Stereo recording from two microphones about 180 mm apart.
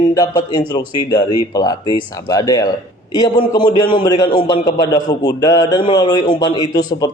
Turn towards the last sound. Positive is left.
turn(degrees=20)  # may be behind; listen again after turning